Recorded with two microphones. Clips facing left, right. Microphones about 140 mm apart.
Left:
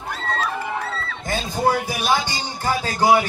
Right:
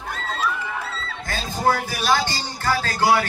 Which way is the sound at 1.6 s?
15° left (ahead or behind).